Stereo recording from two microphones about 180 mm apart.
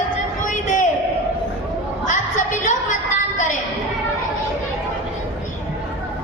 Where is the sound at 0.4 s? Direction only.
45° left (ahead or behind).